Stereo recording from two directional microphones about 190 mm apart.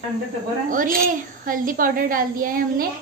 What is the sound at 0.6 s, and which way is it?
A child's voice, 45° right (ahead or behind).